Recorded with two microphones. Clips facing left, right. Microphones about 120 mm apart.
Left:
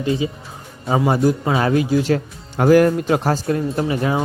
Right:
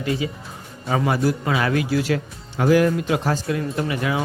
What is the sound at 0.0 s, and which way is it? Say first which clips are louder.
A man's voice: left 4 dB; 25° left (ahead or behind).